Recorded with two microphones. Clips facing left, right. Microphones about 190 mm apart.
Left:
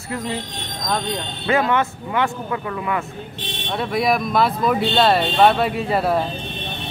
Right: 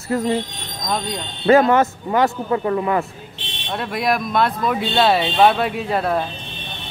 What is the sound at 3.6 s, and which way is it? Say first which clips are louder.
Speech: left 1 dB; centre (ahead or behind).